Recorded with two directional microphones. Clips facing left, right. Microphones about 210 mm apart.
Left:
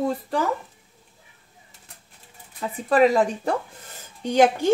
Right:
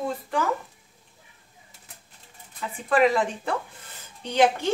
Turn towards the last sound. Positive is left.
turn(degrees=45)  # may be behind; listen again after turning